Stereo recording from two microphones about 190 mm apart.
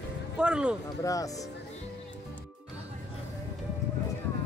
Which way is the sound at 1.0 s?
15° left (ahead or behind).